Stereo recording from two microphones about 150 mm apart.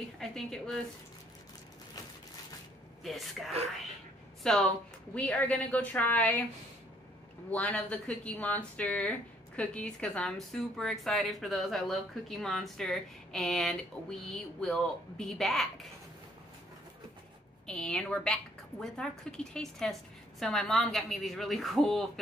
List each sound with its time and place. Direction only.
0.2 s speech: 5° left (ahead or behind)
3.0 s a woman's voice: centre (ahead or behind)
7.5 s speech: 10° left (ahead or behind)
17.6 s speech: 5° left (ahead or behind)